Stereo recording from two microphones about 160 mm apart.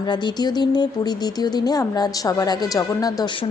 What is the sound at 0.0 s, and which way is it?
Speech, 25° left (ahead or behind).